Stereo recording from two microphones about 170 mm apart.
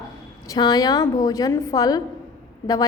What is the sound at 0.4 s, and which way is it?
A woman's voice, 20° left (ahead or behind).